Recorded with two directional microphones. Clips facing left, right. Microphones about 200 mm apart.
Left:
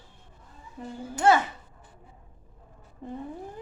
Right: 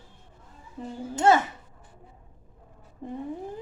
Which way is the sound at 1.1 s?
20° right (ahead or behind).